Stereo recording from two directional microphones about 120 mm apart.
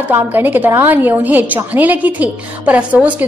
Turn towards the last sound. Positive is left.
turn(degrees=-10)  # may be behind; listen again after turning